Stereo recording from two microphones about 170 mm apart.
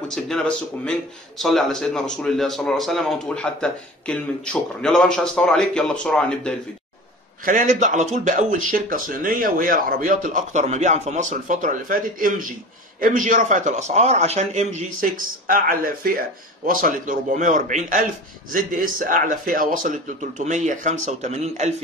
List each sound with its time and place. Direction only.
0.1 s speech: 5° left (ahead or behind)
7.4 s speech: 50° right (ahead or behind)